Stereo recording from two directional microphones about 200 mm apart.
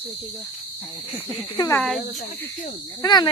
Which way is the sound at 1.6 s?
15° left (ahead or behind).